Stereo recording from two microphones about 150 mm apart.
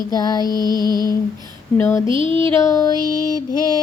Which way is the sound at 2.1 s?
35° right (ahead or behind).